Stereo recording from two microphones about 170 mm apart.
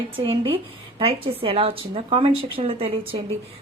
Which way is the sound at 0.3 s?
35° right (ahead or behind).